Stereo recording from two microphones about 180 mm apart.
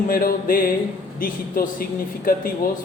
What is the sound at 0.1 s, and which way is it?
A man's voice, 50° left (ahead or behind).